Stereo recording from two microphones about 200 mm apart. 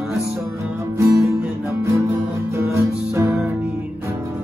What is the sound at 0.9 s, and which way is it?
Music, 15° right (ahead or behind).